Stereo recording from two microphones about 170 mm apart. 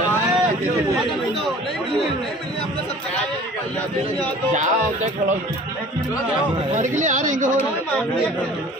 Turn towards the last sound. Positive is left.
turn(degrees=-50)  # may be behind; listen again after turning